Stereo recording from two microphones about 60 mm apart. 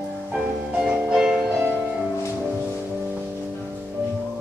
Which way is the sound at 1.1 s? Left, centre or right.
Centre.